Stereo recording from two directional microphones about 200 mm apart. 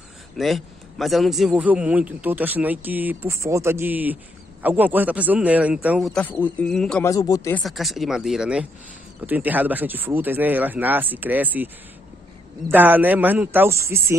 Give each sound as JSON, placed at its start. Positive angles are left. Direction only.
{"t": 0.4, "sound": "a man's voice", "side_deg": 0}
{"t": 7.1, "sound": "speech", "side_deg": 15}
{"t": 7.6, "sound": "a man's voice", "side_deg": 0}
{"t": 12.7, "sound": "a man's voice", "side_deg": -10}